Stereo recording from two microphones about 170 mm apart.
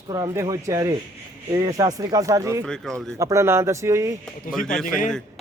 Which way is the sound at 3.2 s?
15° right (ahead or behind).